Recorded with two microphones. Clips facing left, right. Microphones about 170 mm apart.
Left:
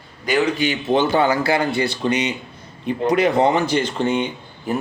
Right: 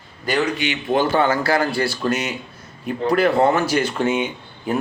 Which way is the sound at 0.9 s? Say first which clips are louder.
Even; 20° left (ahead or behind).